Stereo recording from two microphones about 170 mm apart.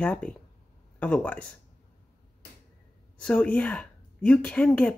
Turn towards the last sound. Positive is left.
turn(degrees=5)  # may be behind; listen again after turning